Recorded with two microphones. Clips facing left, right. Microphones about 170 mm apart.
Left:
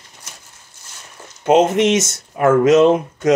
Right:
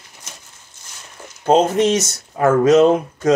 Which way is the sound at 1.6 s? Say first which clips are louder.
Left 1 dB; 25° left (ahead or behind).